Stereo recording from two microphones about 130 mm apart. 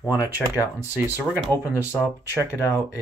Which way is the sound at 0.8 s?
15° right (ahead or behind).